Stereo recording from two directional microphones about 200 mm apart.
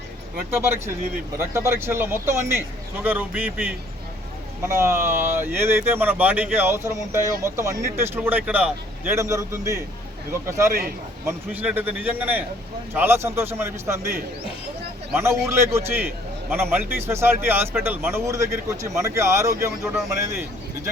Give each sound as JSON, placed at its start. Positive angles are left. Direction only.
{"t": 0.6, "sound": "speech", "side_deg": -10}
{"t": 11.3, "sound": "speech", "side_deg": -10}
{"t": 15.1, "sound": "speech", "side_deg": -15}